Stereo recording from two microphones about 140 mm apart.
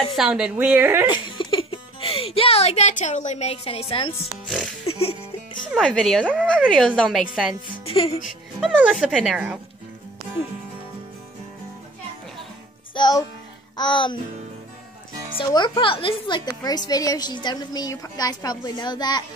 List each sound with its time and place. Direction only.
0.1 s a woman's voice: 5° right (ahead or behind)
1.1 s music: 35° left (ahead or behind)
5.8 s speech: 5° left (ahead or behind)
7.8 s speech: 45° left (ahead or behind)
8.3 s music: centre (ahead or behind)
8.7 s speech: 5° right (ahead or behind)
12.9 s a child's voice: 30° left (ahead or behind)
15.3 s a woman's voice: 30° left (ahead or behind)